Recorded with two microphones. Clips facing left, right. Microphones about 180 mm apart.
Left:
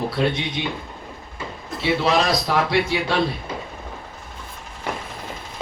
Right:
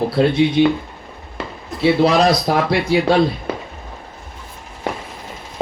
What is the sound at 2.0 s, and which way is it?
Speech, 40° right (ahead or behind).